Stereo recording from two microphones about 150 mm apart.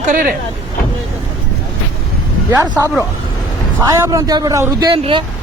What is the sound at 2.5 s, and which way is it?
Speech, 20° right (ahead or behind).